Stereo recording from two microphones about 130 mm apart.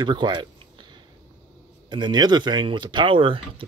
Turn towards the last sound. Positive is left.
turn(degrees=-40)  # may be behind; listen again after turning